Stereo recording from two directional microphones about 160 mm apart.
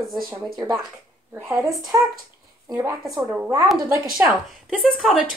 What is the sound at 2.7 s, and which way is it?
Speech, 20° right (ahead or behind).